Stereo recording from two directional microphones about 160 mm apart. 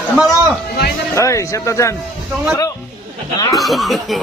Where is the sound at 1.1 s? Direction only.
20° left (ahead or behind).